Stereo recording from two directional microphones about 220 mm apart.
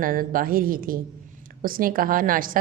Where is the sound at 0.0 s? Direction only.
40° right (ahead or behind).